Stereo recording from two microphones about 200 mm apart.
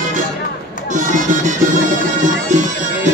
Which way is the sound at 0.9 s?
40° right (ahead or behind).